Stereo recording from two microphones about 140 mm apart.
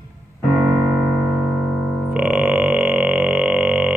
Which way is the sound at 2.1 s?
5° right (ahead or behind).